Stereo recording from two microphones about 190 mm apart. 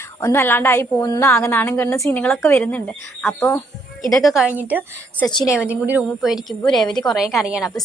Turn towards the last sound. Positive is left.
turn(degrees=0)  # may be behind; listen again after turning